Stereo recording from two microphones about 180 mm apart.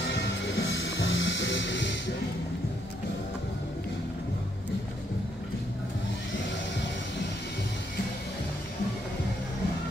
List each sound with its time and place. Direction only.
0.0 s music: 75° left (ahead or behind)